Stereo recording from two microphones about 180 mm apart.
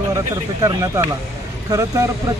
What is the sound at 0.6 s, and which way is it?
Speech, 15° right (ahead or behind).